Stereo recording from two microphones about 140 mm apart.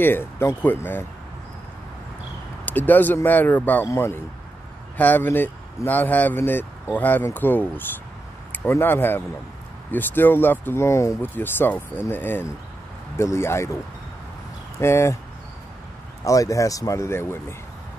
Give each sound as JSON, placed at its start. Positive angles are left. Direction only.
{"t": 0.0, "sound": "speech", "side_deg": 15}
{"t": 2.6, "sound": "speech", "side_deg": 10}
{"t": 14.8, "sound": "speech", "side_deg": 20}
{"t": 16.3, "sound": "speech", "side_deg": 25}